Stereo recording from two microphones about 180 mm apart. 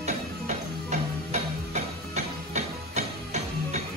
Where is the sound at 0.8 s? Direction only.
40° right (ahead or behind).